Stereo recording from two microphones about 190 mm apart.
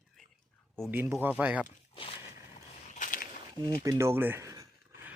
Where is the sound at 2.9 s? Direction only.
45° left (ahead or behind).